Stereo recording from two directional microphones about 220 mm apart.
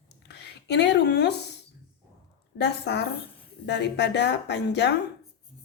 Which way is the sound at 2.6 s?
50° left (ahead or behind).